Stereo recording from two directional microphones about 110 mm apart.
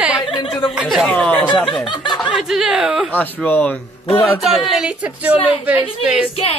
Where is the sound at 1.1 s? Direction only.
15° left (ahead or behind).